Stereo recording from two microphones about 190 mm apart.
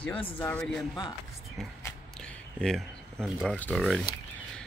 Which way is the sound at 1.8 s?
5° left (ahead or behind).